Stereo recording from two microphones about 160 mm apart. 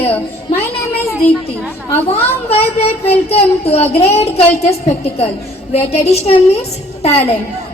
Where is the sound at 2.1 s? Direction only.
40° left (ahead or behind).